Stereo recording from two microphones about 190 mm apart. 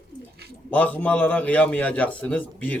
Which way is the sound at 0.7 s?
10° left (ahead or behind).